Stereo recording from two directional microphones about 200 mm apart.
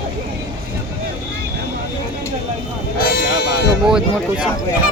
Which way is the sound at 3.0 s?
50° left (ahead or behind).